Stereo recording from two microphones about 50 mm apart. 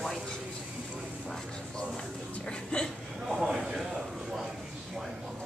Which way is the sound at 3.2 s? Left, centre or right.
Centre.